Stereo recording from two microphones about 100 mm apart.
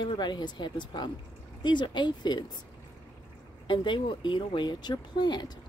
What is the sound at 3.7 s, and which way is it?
Speech, 50° left (ahead or behind).